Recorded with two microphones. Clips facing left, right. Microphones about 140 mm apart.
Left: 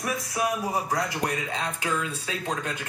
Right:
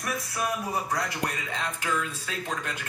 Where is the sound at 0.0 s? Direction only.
20° left (ahead or behind).